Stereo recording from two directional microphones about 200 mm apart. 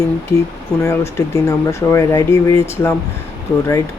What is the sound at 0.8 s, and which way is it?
Speech, 15° left (ahead or behind).